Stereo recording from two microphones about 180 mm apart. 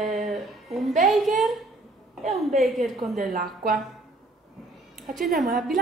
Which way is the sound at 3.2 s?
50° right (ahead or behind).